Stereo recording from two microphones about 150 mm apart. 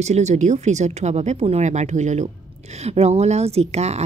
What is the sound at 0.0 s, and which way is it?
A woman's voice, 50° right (ahead or behind).